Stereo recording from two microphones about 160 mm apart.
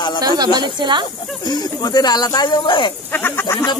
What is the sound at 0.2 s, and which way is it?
Speech, 25° right (ahead or behind).